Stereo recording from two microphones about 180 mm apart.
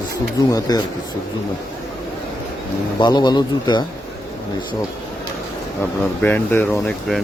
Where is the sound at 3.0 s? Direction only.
25° left (ahead or behind).